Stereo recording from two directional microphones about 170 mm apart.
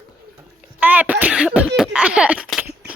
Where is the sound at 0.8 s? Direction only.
10° right (ahead or behind).